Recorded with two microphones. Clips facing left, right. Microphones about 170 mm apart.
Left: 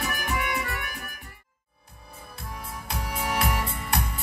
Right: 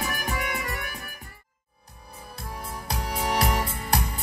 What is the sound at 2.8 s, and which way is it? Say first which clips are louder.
Music: right 2 dB; 35° right (ahead or behind).